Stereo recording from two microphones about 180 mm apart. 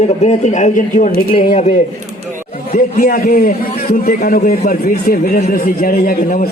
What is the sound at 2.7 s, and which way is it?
A man's voice, 50° left (ahead or behind).